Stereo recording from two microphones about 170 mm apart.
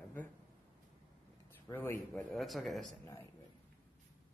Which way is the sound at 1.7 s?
15° left (ahead or behind).